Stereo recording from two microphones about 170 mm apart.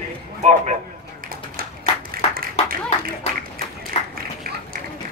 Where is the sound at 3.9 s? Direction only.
35° left (ahead or behind).